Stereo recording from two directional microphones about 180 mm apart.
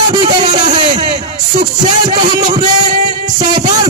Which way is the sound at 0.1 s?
25° right (ahead or behind).